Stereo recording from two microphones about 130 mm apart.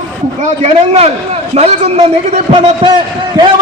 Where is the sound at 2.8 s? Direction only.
40° right (ahead or behind).